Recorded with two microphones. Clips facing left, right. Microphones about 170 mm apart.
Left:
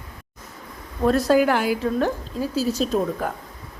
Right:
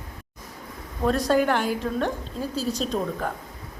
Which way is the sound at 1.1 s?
5° left (ahead or behind).